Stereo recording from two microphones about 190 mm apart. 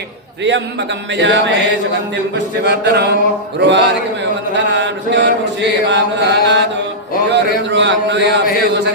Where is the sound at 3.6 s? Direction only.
70° right (ahead or behind).